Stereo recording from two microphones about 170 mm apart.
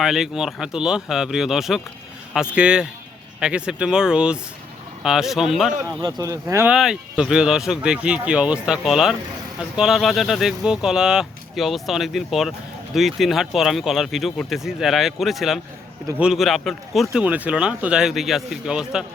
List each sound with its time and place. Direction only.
0.0 s speech: centre (ahead or behind)
5.8 s speech: 20° right (ahead or behind)
6.7 s speech: 5° right (ahead or behind)